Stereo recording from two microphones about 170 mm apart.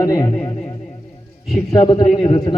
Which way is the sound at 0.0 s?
20° left (ahead or behind).